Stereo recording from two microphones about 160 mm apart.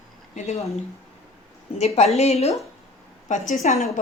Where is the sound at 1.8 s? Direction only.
40° left (ahead or behind).